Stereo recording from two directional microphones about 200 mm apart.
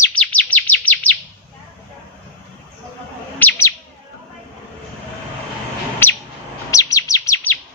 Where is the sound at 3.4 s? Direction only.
10° left (ahead or behind).